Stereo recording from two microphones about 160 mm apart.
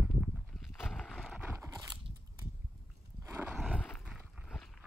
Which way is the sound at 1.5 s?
20° right (ahead or behind).